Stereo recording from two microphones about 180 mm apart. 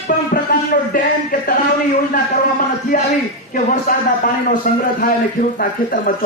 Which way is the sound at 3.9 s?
50° left (ahead or behind).